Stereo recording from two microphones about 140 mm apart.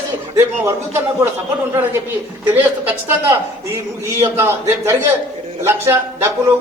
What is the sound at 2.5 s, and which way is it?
A man's voice, 15° right (ahead or behind).